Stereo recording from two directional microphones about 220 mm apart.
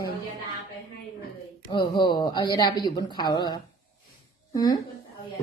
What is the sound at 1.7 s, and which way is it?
A woman's voice, 20° left (ahead or behind).